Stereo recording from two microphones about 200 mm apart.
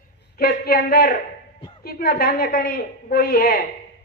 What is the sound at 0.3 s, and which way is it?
A woman's voice, 50° left (ahead or behind).